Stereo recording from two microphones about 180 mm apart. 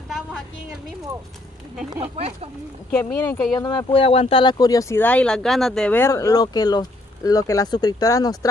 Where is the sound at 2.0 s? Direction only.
35° right (ahead or behind).